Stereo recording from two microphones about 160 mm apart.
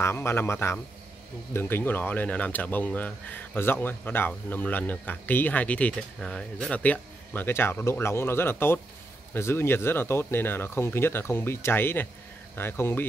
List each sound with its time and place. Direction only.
0.0 s speech: 15° left (ahead or behind)